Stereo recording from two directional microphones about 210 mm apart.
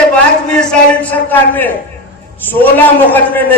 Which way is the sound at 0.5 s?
5° left (ahead or behind).